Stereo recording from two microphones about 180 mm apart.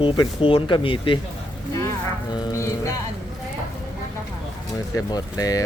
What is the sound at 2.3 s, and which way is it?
Speech, 20° left (ahead or behind).